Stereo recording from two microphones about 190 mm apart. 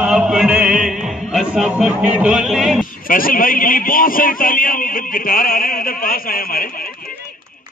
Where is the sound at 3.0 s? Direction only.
50° left (ahead or behind).